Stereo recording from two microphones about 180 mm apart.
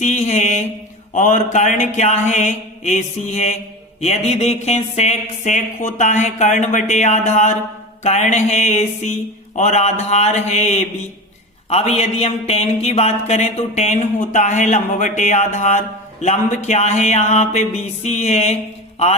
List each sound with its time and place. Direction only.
0.0 s speech: 40° left (ahead or behind)